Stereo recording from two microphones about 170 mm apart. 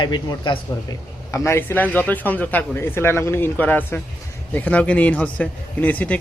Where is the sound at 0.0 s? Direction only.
25° left (ahead or behind).